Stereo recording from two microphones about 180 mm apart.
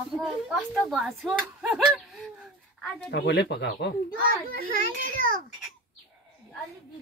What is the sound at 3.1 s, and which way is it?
A child's voice, 70° left (ahead or behind).